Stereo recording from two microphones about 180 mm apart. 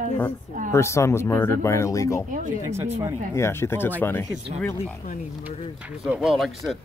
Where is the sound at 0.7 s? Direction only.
15° left (ahead or behind).